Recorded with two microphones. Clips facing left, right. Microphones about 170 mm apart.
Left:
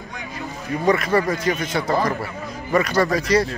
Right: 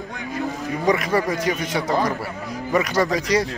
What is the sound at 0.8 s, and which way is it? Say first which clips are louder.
A man's voice: left 2 dB; 15° right (ahead or behind).